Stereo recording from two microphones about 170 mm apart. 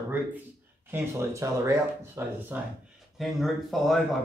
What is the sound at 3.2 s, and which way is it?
Speech, centre (ahead or behind).